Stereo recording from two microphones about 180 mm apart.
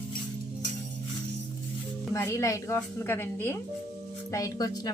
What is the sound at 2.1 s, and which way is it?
A woman's voice, 15° left (ahead or behind).